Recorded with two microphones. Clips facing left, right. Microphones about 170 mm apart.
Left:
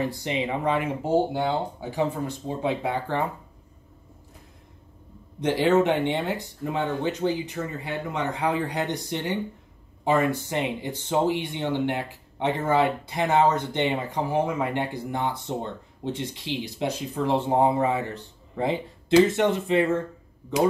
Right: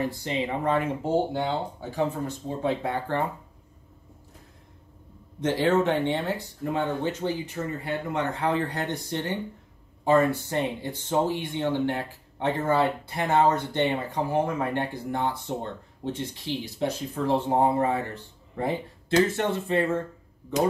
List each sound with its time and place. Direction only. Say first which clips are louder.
0.0 s speech: left 1 dB; 15° left (ahead or behind)
5.4 s speech: left 2 dB; 15° left (ahead or behind)